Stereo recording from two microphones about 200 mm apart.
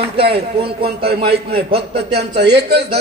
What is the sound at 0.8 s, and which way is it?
A man's voice, 55° right (ahead or behind).